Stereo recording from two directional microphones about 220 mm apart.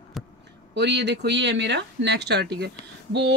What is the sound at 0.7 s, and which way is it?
Speech, 50° right (ahead or behind).